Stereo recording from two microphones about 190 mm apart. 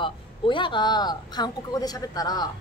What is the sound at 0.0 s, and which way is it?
A woman's voice, 25° left (ahead or behind).